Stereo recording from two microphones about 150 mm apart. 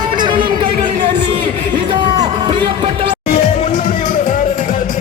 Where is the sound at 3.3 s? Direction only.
60° left (ahead or behind).